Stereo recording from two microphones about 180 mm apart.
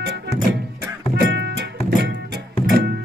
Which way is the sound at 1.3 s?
70° right (ahead or behind).